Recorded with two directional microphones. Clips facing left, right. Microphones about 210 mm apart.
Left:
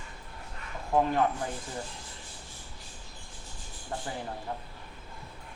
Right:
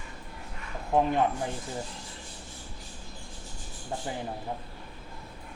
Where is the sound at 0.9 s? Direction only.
20° right (ahead or behind).